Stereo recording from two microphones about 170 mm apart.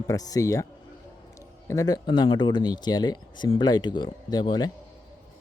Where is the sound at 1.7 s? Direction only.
20° left (ahead or behind).